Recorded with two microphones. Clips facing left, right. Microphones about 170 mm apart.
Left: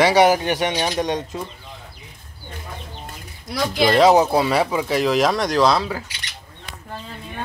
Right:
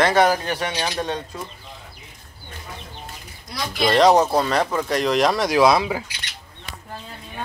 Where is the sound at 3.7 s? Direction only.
Centre (ahead or behind); by 6.1 s 15° right (ahead or behind).